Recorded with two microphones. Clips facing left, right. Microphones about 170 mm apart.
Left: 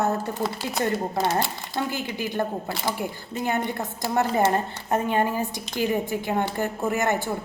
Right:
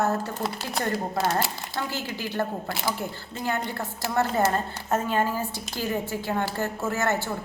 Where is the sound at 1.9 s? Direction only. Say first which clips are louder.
Left 3 dB; 15° left (ahead or behind).